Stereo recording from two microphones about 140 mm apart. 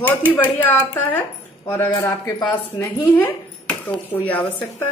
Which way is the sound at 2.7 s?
15° left (ahead or behind).